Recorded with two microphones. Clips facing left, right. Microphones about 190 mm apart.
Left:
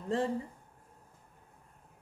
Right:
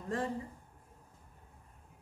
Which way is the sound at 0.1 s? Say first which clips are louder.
Left 4 dB; 25° left (ahead or behind).